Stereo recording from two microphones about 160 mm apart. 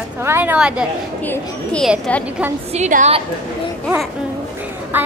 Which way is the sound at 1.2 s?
10° left (ahead or behind).